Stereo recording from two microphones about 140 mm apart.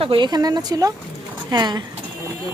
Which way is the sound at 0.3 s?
30° right (ahead or behind).